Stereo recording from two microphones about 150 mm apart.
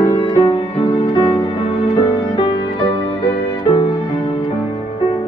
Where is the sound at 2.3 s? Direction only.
30° left (ahead or behind).